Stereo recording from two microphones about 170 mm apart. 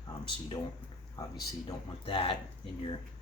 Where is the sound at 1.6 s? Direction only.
30° left (ahead or behind).